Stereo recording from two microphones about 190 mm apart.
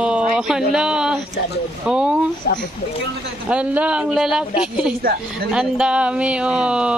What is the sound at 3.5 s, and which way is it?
Speech, 5° right (ahead or behind).